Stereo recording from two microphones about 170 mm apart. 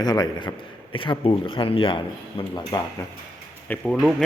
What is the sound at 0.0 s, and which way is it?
A man's voice, 25° left (ahead or behind).